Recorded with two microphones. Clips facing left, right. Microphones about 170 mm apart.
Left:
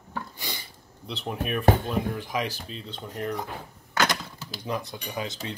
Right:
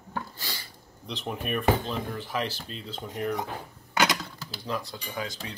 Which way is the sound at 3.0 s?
10° right (ahead or behind).